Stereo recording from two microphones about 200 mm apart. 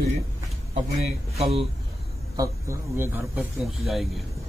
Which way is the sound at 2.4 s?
15° right (ahead or behind).